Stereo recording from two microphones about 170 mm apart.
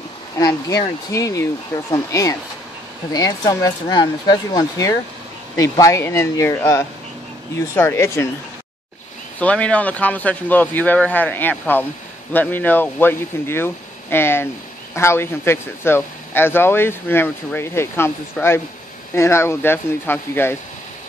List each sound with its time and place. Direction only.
0.4 s speech: 20° left (ahead or behind)
9.4 s speech: 5° left (ahead or behind)